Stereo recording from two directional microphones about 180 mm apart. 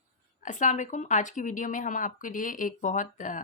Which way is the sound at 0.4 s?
45° left (ahead or behind).